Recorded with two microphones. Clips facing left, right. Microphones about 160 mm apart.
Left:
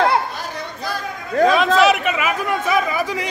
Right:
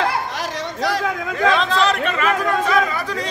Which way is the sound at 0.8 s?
90° right.